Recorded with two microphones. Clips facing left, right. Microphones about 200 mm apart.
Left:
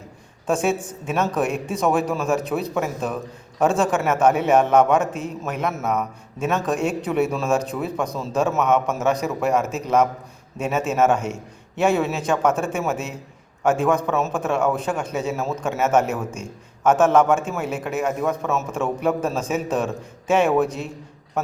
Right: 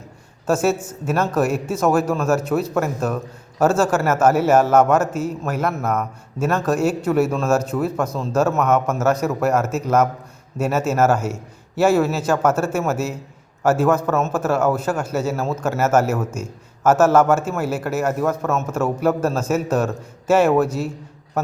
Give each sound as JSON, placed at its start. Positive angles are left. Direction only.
{"t": 0.4, "sound": "a man's voice", "side_deg": -5}